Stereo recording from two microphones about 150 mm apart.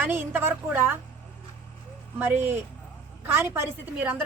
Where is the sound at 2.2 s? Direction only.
15° right (ahead or behind).